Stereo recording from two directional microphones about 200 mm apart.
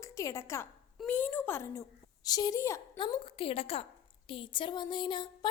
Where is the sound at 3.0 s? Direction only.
25° left (ahead or behind).